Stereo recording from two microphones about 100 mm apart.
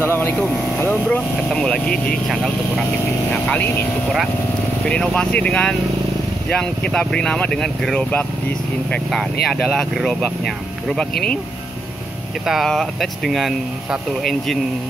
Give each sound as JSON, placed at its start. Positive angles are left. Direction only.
{"t": 0.0, "sound": "vehicle", "side_deg": 20}
{"t": 0.4, "sound": "speech", "side_deg": 20}
{"t": 1.5, "sound": "speech", "side_deg": 5}
{"t": 3.4, "sound": "speech", "side_deg": 20}
{"t": 4.8, "sound": "speech", "side_deg": 10}
{"t": 9.1, "sound": "speech", "side_deg": 0}
{"t": 12.4, "sound": "speech", "side_deg": 0}